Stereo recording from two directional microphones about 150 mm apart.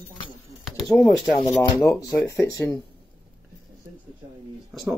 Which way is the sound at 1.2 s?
30° left (ahead or behind).